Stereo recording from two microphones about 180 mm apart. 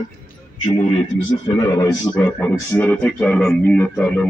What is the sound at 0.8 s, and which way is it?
Speech, 40° left (ahead or behind).